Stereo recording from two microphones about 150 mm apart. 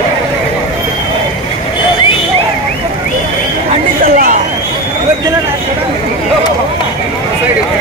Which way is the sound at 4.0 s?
70° right (ahead or behind).